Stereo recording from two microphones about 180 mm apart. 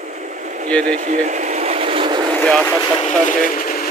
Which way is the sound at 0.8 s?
40° right (ahead or behind).